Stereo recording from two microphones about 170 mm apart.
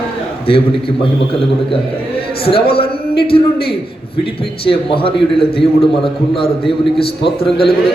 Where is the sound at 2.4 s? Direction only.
35° left (ahead or behind).